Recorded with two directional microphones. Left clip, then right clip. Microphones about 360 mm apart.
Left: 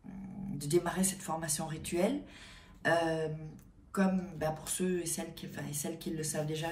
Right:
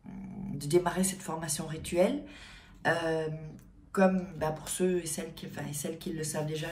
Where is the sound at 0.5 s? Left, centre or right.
Centre.